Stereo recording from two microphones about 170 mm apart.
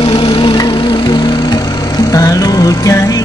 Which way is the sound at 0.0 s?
35° left (ahead or behind).